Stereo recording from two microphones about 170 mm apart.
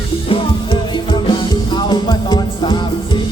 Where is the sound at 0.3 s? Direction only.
30° left (ahead or behind).